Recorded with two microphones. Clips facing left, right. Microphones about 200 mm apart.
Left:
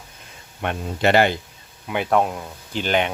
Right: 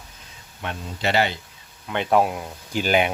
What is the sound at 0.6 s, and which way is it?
Speech, 55° left (ahead or behind).